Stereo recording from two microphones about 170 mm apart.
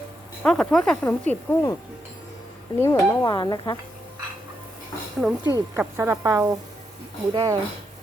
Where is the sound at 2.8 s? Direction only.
20° left (ahead or behind).